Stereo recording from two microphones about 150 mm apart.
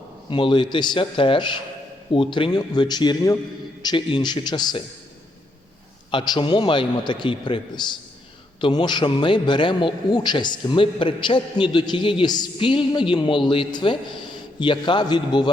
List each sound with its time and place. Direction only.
0.3 s a man's voice: 35° left (ahead or behind)
6.1 s a man's voice: 30° left (ahead or behind)